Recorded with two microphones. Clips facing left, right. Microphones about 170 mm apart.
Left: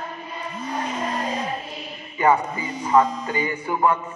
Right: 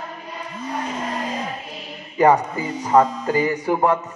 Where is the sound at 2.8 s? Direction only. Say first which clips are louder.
Right 2 dB; 40° right (ahead or behind).